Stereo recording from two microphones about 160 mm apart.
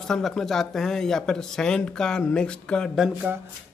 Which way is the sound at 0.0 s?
Centre (ahead or behind).